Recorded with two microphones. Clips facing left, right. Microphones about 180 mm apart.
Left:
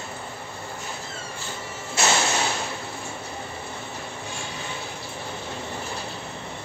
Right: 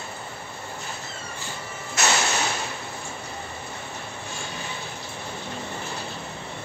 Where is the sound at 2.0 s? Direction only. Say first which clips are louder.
Left 1 dB; 30° left (ahead or behind).